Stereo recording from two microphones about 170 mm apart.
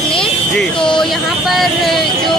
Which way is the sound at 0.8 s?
5° left (ahead or behind).